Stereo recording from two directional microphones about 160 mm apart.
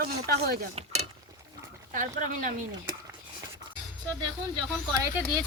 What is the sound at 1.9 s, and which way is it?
Speech, 55° right (ahead or behind).